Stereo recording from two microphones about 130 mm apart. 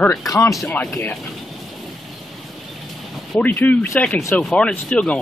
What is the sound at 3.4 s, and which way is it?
Speech, 10° left (ahead or behind).